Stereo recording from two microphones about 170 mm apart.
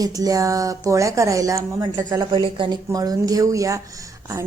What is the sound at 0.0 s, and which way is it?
A woman's voice, 20° right (ahead or behind).